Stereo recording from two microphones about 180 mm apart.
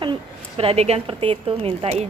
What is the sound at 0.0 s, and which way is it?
A woman's voice, 30° right (ahead or behind).